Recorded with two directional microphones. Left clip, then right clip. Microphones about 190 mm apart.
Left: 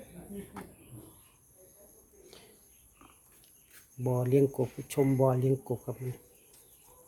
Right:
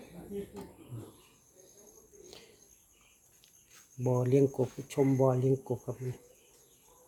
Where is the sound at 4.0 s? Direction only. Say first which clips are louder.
Even; centre (ahead or behind).